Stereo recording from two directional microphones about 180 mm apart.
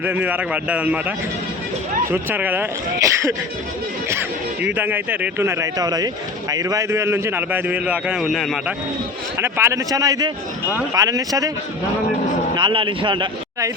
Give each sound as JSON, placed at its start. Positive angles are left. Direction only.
{"t": 0.0, "sound": "a man's voice", "side_deg": -10}
{"t": 9.4, "sound": "a man's voice", "side_deg": -15}
{"t": 12.5, "sound": "a man's voice", "side_deg": -25}